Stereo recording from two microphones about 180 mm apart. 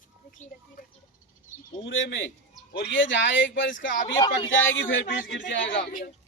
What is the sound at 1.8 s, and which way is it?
Speech, 90° left.